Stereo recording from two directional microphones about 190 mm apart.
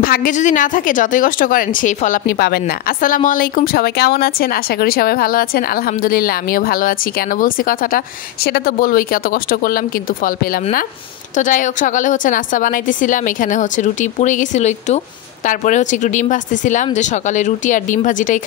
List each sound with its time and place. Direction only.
0.0 s a woman's voice: 50° left (ahead or behind)